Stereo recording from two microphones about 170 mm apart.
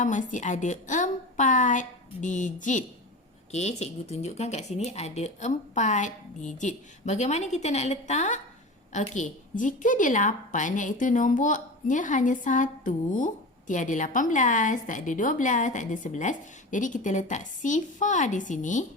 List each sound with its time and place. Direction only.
0.0 s a woman's voice: 50° left (ahead or behind)